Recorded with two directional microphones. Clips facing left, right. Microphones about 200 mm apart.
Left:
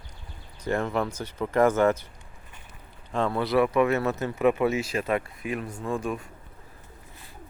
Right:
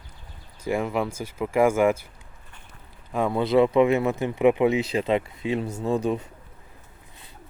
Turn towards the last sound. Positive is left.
turn(degrees=-20)  # may be behind; listen again after turning